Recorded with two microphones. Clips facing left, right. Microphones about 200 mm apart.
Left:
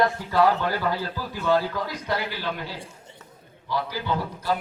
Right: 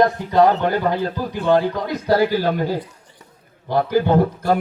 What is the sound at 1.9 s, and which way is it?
A man's voice, 40° right (ahead or behind).